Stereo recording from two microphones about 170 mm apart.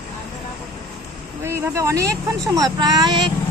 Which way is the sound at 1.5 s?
15° right (ahead or behind).